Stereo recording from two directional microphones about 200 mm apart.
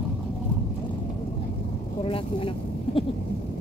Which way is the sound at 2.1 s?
25° left (ahead or behind).